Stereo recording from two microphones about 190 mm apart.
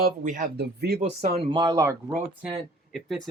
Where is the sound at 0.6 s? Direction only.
55° right (ahead or behind).